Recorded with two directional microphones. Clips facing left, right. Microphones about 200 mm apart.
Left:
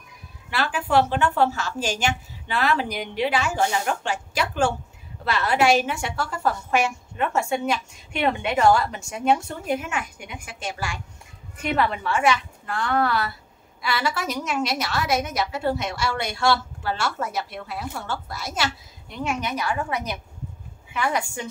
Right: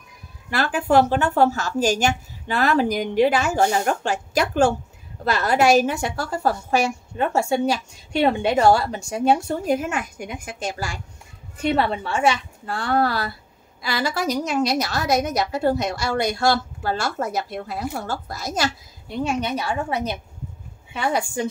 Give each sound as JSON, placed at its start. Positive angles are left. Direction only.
{"t": 0.5, "sound": "a woman's voice", "side_deg": -45}